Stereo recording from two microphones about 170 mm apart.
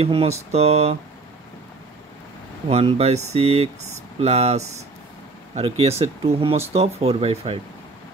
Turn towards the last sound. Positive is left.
turn(degrees=-35)  # may be behind; listen again after turning